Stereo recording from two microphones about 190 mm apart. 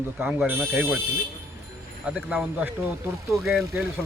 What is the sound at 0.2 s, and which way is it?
Speech, 10° right (ahead or behind).